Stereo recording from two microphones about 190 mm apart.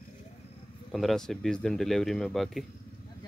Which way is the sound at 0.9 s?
Centre (ahead or behind).